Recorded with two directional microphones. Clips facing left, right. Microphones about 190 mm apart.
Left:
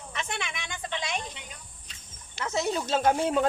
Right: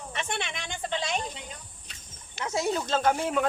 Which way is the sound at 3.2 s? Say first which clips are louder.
Left 2 dB; 25° left (ahead or behind).